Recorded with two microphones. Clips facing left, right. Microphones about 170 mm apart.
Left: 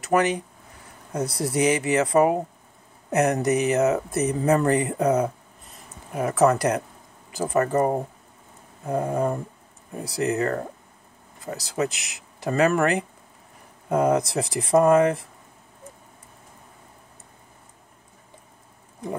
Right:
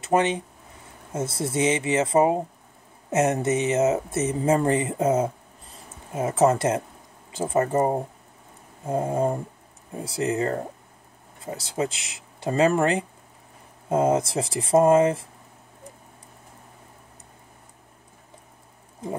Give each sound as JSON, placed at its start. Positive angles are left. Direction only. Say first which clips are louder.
{"t": 0.0, "sound": "speech", "louder": "even", "side_deg": -25}